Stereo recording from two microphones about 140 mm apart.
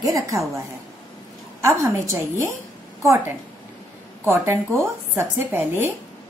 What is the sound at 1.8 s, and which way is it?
Speech, 20° right (ahead or behind).